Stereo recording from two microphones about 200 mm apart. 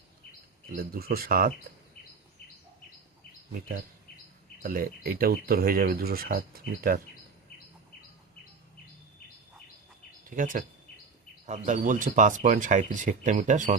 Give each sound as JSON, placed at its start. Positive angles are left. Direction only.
{"t": 0.8, "sound": "speech", "side_deg": -50}
{"t": 4.6, "sound": "speech", "side_deg": -45}
{"t": 10.2, "sound": "speech", "side_deg": -40}